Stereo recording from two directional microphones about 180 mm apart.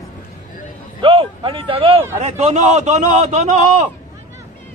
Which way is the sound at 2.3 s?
40° right (ahead or behind).